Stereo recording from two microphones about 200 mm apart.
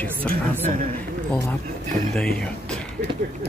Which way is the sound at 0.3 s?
45° right (ahead or behind).